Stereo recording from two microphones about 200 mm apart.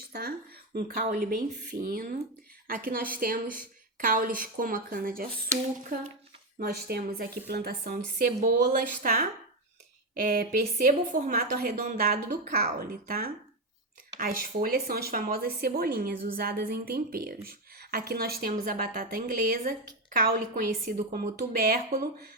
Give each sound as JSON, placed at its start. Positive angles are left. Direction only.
{"t": 0.1, "sound": "a woman's voice", "side_deg": -50}
{"t": 6.6, "sound": "a woman's voice", "side_deg": -50}